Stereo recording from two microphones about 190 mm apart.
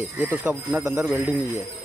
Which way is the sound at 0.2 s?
10° right (ahead or behind).